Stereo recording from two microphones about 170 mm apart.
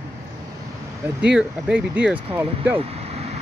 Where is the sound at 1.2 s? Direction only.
5° right (ahead or behind).